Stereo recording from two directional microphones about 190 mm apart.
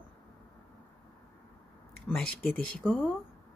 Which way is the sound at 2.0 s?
5° left (ahead or behind).